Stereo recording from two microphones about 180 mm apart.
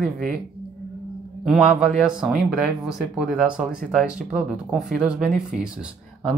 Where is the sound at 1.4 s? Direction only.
5° right (ahead or behind).